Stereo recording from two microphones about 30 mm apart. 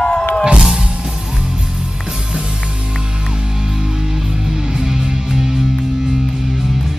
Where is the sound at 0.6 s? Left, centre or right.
Right.